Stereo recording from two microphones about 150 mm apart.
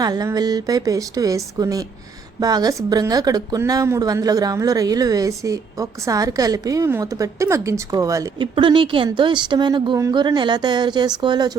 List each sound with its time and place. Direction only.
0.0 s speech: 25° right (ahead or behind)
8.5 s speech: 35° right (ahead or behind)